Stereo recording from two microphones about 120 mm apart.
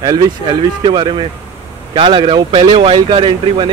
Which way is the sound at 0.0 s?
40° right (ahead or behind).